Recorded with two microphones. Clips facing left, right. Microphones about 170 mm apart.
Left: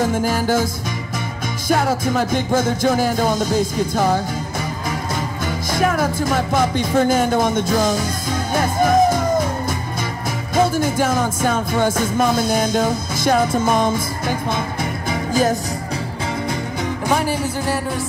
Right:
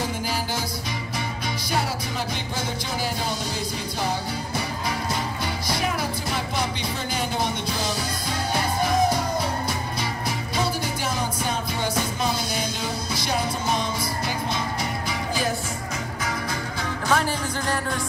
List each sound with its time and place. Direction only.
0.0 s music: 50° left (ahead or behind)
1.7 s music: 50° left (ahead or behind)
5.7 s music: 50° left (ahead or behind)
10.5 s music: 50° left (ahead or behind)
17.1 s music: 10° left (ahead or behind)